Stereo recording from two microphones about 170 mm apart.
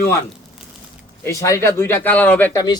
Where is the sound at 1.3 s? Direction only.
15° left (ahead or behind).